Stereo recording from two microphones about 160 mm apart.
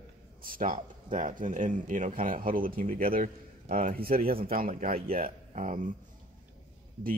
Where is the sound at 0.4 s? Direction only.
60° right (ahead or behind).